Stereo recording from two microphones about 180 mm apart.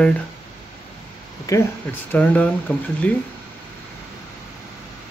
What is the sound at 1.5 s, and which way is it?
Speech, 20° left (ahead or behind).